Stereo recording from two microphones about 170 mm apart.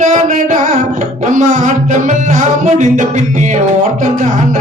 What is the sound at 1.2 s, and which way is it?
Music, 45° right (ahead or behind).